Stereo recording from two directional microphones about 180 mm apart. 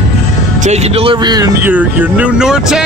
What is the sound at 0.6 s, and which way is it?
Speech, 35° right (ahead or behind).